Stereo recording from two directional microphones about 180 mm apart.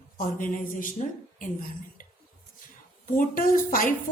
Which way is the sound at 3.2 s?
50° left (ahead or behind).